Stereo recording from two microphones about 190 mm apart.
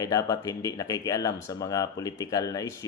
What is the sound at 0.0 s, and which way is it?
Speech, 20° left (ahead or behind).